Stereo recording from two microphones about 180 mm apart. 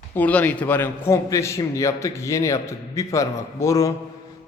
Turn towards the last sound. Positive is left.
turn(degrees=20)  # may be behind; listen again after turning